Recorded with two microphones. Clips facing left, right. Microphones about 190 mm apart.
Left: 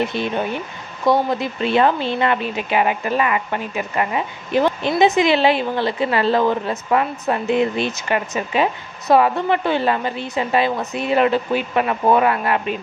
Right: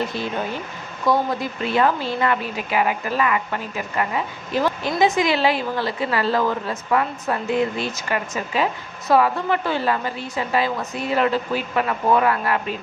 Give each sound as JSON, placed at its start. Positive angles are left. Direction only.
{"t": 1.0, "sound": "a woman's voice", "side_deg": 25}